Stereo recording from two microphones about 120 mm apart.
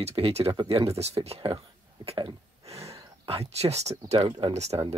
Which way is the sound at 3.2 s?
55° right (ahead or behind).